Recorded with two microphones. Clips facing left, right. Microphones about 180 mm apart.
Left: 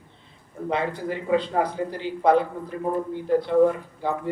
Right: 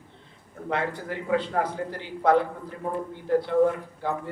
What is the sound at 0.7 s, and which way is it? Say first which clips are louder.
A man's voice: left 3 dB; 15° left (ahead or behind).